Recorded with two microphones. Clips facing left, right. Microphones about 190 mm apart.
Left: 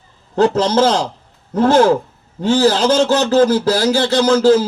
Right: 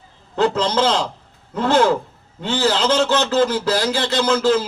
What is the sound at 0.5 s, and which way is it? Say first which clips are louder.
Speech: left 5 dB; 40° left (ahead or behind).